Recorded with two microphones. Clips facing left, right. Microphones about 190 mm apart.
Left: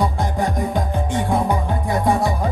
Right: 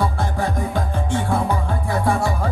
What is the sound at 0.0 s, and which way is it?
Music, 15° left (ahead or behind).